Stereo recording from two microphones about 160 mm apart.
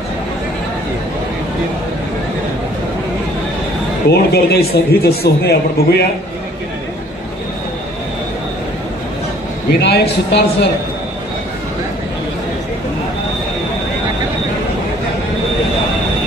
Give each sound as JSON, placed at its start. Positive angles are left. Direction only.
{"t": 4.1, "sound": "a man's voice", "side_deg": 90}
{"t": 9.8, "sound": "speech", "side_deg": 90}